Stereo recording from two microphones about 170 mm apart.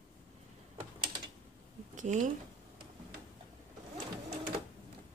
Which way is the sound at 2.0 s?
45° right (ahead or behind).